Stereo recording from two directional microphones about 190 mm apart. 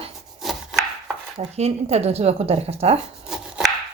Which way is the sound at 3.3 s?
Centre (ahead or behind).